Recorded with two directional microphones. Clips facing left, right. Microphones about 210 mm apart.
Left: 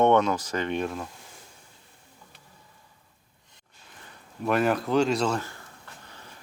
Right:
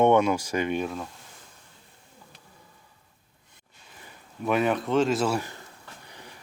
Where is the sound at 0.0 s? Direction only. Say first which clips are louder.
Right 1 dB; 10° right (ahead or behind).